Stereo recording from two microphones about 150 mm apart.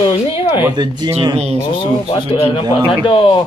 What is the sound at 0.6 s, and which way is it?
Speech, 25° right (ahead or behind).